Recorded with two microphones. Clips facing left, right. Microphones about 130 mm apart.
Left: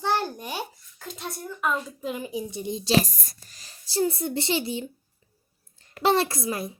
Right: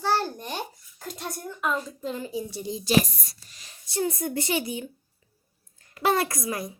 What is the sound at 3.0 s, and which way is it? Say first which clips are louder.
A child's voice: left 2 dB; 45° left (ahead or behind).